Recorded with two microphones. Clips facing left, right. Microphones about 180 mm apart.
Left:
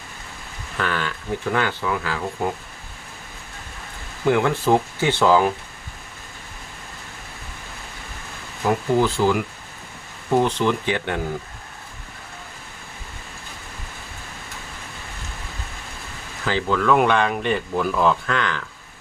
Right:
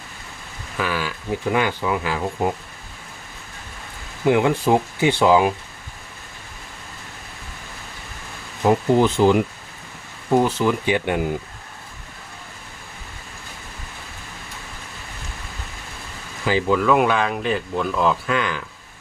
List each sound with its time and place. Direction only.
0.8 s speech: 10° right (ahead or behind)
4.3 s speech: 15° right (ahead or behind)
8.6 s speech: 20° right (ahead or behind)
16.5 s speech: 10° right (ahead or behind)